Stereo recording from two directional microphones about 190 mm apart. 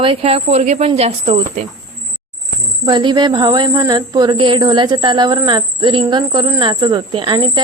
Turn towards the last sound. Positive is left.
turn(degrees=-25)  # may be behind; listen again after turning